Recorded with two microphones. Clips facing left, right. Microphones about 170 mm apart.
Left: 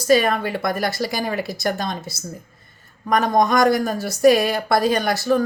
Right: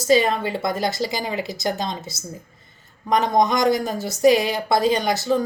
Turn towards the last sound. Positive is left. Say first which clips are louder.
# left 2 dB
turn(degrees=-20)  # may be behind; listen again after turning